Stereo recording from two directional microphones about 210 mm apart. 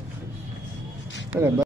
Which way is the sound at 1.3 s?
15° right (ahead or behind).